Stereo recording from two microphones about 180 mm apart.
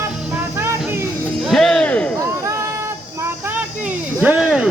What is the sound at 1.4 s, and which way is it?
Music, centre (ahead or behind).